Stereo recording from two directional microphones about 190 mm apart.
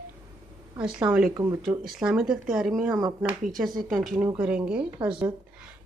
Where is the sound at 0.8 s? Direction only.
5° right (ahead or behind).